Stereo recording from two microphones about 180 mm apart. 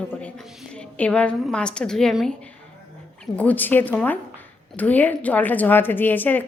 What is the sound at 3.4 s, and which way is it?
A woman's voice, 10° left (ahead or behind).